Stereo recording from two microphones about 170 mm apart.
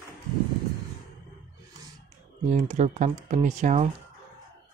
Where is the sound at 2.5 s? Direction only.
45° right (ahead or behind).